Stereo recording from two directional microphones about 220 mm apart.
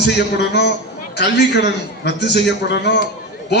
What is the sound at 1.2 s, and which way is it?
Speech, 50° left (ahead or behind).